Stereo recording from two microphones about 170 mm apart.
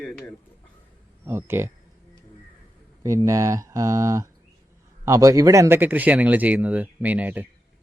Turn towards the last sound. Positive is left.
turn(degrees=-10)  # may be behind; listen again after turning